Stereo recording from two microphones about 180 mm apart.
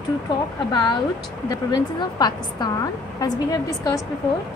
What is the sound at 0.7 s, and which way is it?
A woman's voice, 25° left (ahead or behind).